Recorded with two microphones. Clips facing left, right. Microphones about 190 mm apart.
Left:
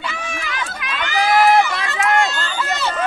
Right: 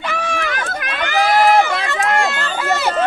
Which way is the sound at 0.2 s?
60° right (ahead or behind).